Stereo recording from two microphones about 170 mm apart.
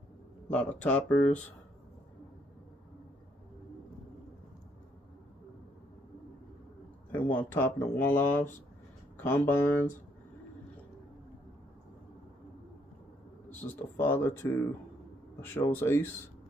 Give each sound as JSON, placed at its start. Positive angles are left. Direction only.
{"t": 0.5, "sound": "speech", "side_deg": 5}
{"t": 7.1, "sound": "speech", "side_deg": 10}
{"t": 13.7, "sound": "speech", "side_deg": 15}